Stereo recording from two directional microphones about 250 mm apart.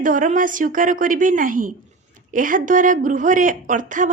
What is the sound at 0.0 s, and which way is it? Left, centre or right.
Speech, right.